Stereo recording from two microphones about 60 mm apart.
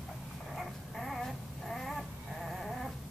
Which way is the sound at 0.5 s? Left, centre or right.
Centre.